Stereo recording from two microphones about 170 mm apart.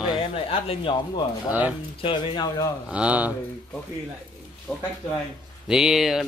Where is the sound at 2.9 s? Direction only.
5° right (ahead or behind).